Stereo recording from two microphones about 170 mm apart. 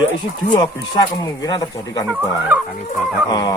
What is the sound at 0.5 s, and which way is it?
Speech, 25° left (ahead or behind).